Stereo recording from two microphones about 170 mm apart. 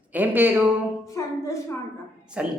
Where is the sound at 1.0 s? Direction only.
20° left (ahead or behind).